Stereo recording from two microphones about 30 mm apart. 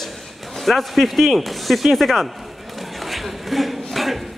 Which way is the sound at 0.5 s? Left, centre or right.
Centre.